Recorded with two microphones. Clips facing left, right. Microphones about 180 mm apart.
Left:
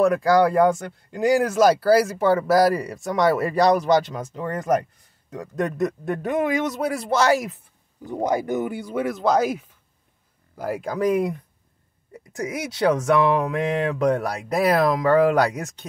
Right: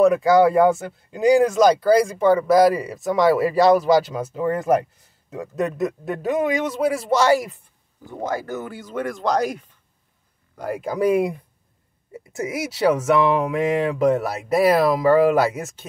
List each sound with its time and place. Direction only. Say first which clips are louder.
0.0 s speech: right 3 dB; centre (ahead or behind)
5.6 s speech: even; centre (ahead or behind)
8.0 s speech: left 4 dB; 15° left (ahead or behind); by 15.9 s 5° right (ahead or behind)